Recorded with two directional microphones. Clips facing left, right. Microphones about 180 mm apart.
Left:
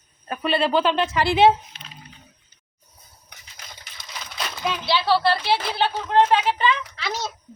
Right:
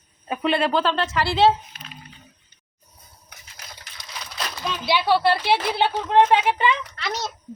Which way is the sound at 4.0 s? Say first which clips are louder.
Even; centre (ahead or behind).